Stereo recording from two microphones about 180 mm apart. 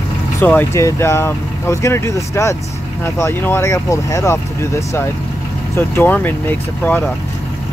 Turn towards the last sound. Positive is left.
turn(degrees=10)  # may be behind; listen again after turning